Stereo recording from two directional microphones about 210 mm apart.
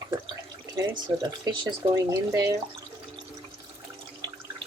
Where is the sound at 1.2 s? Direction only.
20° right (ahead or behind).